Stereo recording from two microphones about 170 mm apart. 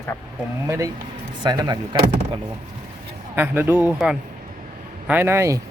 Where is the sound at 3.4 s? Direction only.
10° right (ahead or behind).